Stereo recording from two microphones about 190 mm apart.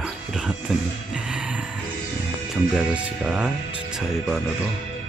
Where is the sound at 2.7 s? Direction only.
5° right (ahead or behind).